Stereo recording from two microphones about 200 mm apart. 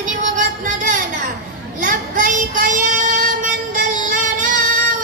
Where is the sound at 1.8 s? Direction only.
40° right (ahead or behind).